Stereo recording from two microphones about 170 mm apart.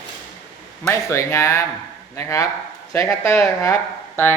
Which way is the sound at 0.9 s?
15° left (ahead or behind).